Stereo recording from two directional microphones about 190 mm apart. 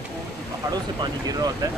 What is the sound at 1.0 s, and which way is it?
Speech, 20° right (ahead or behind).